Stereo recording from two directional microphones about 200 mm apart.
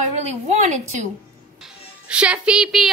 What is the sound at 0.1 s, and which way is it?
Speech, 35° right (ahead or behind).